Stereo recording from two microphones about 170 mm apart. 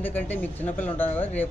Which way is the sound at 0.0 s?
10° left (ahead or behind).